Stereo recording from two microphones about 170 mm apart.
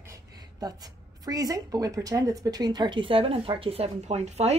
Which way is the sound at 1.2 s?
20° right (ahead or behind).